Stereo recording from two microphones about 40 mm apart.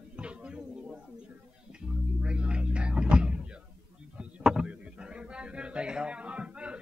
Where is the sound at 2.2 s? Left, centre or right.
Right.